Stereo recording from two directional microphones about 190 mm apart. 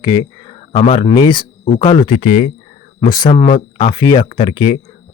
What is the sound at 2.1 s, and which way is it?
Speech, 35° left (ahead or behind).